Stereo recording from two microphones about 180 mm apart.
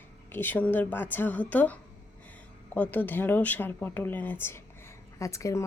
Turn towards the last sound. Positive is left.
turn(degrees=15)  # may be behind; listen again after turning